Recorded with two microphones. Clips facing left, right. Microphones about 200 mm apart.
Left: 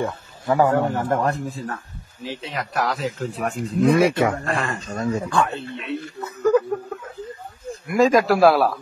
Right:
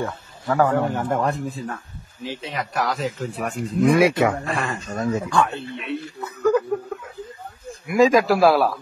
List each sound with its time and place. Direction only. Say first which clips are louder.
0.0 s a man's voice: left 2 dB; 15° left (ahead or behind)
0.7 s speech: left 1 dB; centre (ahead or behind)
7.8 s speech: right 1 dB; centre (ahead or behind)